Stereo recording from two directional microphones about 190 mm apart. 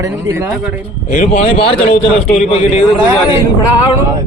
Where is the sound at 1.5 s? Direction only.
30° left (ahead or behind).